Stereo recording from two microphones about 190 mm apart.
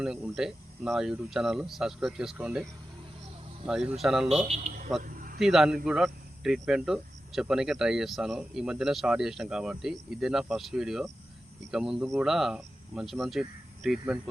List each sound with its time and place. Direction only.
0.0 s speech: 5° right (ahead or behind)
3.7 s speech: 5° right (ahead or behind)
4.4 s speech: 40° right (ahead or behind)
5.0 s a sound: 45° right (ahead or behind)
5.4 s speech: centre (ahead or behind)